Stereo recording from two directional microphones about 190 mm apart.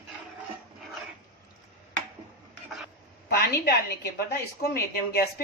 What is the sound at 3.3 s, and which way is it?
A woman's voice, 55° left (ahead or behind).